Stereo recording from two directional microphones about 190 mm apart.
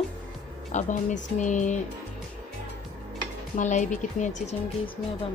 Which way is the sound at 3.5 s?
40° left (ahead or behind).